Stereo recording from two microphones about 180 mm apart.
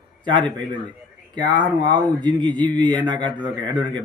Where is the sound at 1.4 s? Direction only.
25° right (ahead or behind).